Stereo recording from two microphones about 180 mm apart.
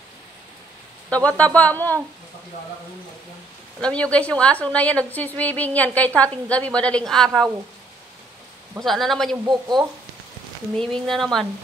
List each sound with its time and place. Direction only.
1.1 s a woman's voice: 5° left (ahead or behind)
3.8 s a woman's voice: 5° left (ahead or behind)
8.8 s speech: centre (ahead or behind)
9.5 s speech: 25° right (ahead or behind)
10.8 s speech: 5° left (ahead or behind)